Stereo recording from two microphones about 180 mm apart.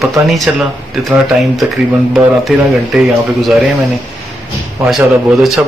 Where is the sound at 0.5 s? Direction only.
5° right (ahead or behind).